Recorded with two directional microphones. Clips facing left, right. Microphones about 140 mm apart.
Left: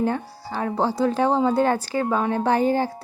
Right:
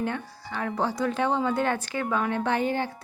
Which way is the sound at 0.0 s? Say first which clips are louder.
Left 6 dB; 35° left (ahead or behind).